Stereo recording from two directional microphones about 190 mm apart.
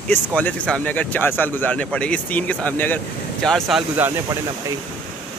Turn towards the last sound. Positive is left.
turn(degrees=-20)  # may be behind; listen again after turning